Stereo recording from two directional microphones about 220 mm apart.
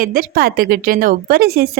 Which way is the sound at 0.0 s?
40° right (ahead or behind).